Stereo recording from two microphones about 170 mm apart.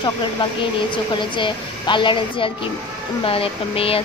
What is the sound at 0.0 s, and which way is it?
A woman's voice, 25° left (ahead or behind).